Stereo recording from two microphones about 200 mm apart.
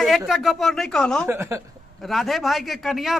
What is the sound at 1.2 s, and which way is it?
Speech, 15° right (ahead or behind).